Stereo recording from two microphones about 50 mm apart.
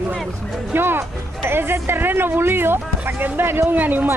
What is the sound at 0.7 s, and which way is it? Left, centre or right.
Speech, right.